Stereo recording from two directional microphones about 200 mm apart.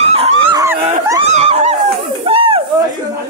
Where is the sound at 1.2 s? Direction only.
35° right (ahead or behind).